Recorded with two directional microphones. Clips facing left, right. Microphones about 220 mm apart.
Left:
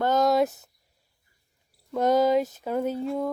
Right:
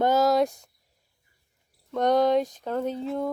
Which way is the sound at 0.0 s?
5° right (ahead or behind).